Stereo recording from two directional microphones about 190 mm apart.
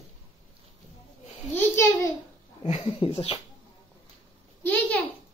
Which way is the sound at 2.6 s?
35° left (ahead or behind).